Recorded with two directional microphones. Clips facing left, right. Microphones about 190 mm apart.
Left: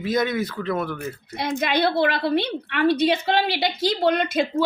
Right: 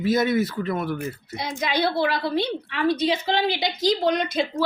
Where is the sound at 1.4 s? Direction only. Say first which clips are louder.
Left 3 dB; 60° left (ahead or behind).